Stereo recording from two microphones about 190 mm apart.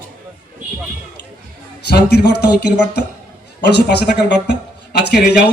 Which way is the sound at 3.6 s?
60° left (ahead or behind).